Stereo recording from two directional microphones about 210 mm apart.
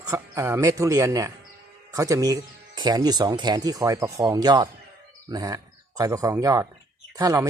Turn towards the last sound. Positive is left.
turn(degrees=-15)  # may be behind; listen again after turning